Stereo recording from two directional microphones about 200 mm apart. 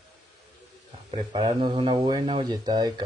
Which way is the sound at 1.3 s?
20° right (ahead or behind).